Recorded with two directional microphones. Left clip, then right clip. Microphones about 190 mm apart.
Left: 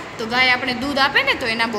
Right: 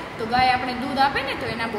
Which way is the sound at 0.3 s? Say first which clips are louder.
Left 3 dB; 40° left (ahead or behind).